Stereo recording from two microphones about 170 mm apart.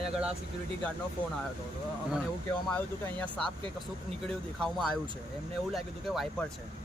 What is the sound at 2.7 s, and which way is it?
Speech, 10° left (ahead or behind).